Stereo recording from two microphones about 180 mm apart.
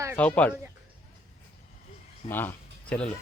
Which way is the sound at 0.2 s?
10° left (ahead or behind).